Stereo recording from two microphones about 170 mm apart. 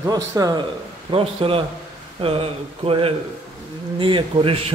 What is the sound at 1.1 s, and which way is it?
A man's voice, 30° right (ahead or behind).